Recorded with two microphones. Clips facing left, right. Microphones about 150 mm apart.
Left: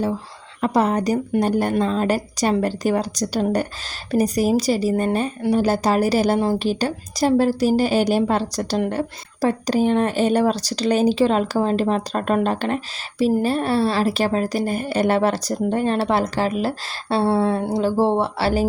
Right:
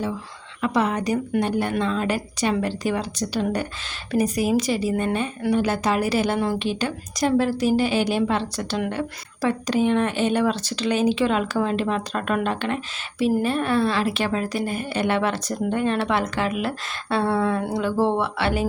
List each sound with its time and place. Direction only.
0.6 s speech: 40° left (ahead or behind)